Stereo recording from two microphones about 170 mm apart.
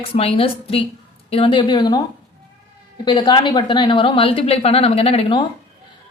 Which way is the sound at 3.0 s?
25° left (ahead or behind).